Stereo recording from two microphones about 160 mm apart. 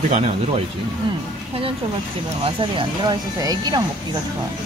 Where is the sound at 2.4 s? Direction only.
30° right (ahead or behind).